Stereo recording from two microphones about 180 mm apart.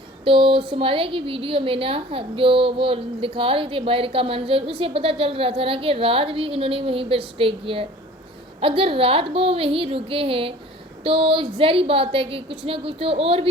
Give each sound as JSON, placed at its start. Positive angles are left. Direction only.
{"t": 0.3, "sound": "a woman's voice", "side_deg": -30}